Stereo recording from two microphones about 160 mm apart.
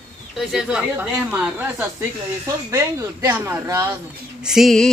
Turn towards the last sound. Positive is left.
turn(degrees=0)  # may be behind; listen again after turning